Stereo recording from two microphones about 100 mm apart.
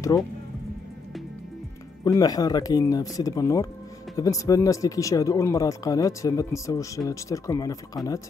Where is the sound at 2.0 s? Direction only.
40° left (ahead or behind).